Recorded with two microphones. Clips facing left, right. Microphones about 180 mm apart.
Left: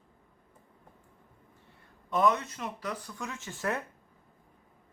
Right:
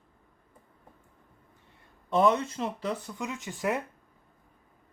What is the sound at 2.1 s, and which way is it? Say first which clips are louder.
Speech: right 3 dB; 30° right (ahead or behind).